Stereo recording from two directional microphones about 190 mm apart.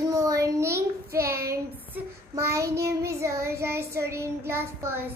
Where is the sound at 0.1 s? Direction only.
15° right (ahead or behind).